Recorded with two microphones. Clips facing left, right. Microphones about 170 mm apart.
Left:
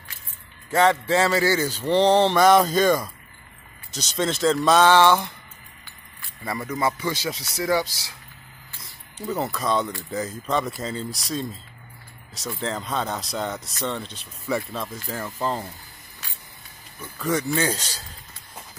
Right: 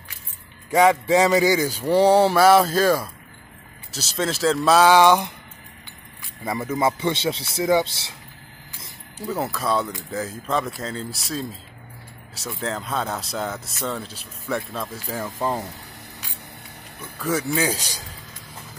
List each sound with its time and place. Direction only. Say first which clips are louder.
0.7 s speech: right 3 dB; 10° right (ahead or behind)
6.4 s speech: right 3 dB; 20° right (ahead or behind)
9.2 s speech: even; 5° right (ahead or behind)
17.2 s speech: even; 5° right (ahead or behind)